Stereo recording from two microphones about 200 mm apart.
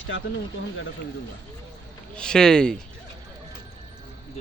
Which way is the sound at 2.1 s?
5° left (ahead or behind).